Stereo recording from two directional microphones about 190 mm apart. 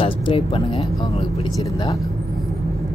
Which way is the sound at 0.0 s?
30° left (ahead or behind).